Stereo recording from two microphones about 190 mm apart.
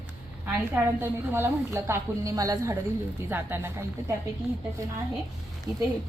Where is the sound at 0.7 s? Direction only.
10° right (ahead or behind).